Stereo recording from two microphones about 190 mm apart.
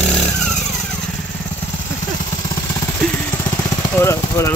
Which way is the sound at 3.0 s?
10° left (ahead or behind).